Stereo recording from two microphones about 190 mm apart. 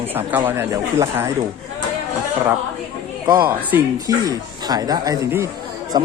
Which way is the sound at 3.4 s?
10° right (ahead or behind).